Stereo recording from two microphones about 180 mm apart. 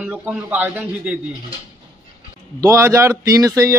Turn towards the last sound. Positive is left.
turn(degrees=-20)  # may be behind; listen again after turning